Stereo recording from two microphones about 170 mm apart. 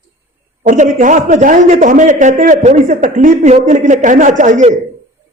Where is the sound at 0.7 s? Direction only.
50° right (ahead or behind).